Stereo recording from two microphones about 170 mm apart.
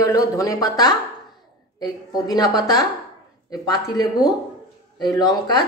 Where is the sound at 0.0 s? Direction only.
20° left (ahead or behind).